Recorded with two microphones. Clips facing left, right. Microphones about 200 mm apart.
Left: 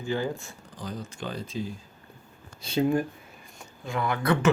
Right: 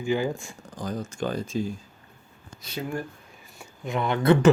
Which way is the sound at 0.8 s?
45° right (ahead or behind).